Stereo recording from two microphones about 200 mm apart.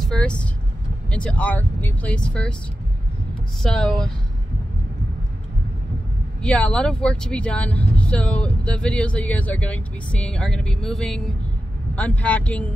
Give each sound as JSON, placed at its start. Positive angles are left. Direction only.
{"t": 0.0, "sound": "vehicle", "side_deg": 5}
{"t": 1.1, "sound": "speech", "side_deg": 5}
{"t": 3.6, "sound": "speech", "side_deg": 5}
{"t": 6.4, "sound": "speech", "side_deg": 5}